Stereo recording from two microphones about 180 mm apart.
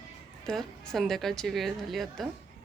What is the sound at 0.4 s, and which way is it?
A woman's voice, 5° left (ahead or behind).